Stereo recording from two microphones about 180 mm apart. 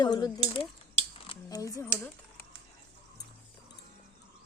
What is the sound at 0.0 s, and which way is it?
Speech, 25° left (ahead or behind).